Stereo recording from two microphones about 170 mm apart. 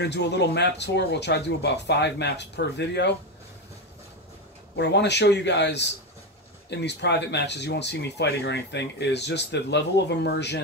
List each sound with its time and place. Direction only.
0.0 s speech: 85° left
4.7 s speech: 90° left